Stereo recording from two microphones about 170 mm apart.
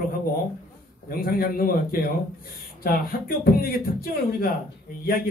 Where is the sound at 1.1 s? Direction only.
60° left (ahead or behind).